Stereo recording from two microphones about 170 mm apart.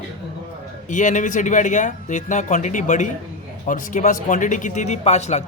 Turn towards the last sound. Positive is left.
turn(degrees=40)  # may be behind; listen again after turning